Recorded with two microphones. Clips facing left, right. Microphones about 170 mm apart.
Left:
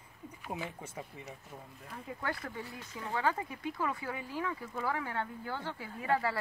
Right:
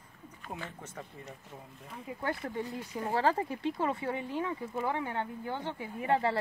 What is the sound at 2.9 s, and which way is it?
Speech, 35° right (ahead or behind).